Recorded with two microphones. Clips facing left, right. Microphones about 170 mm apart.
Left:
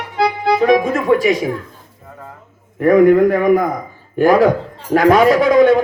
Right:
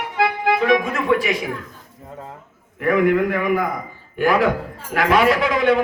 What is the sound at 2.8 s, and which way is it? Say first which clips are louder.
A man's voice: left 7 dB; 40° left (ahead or behind).